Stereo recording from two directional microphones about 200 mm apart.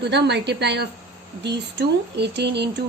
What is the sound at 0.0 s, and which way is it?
A woman's voice, 55° right (ahead or behind).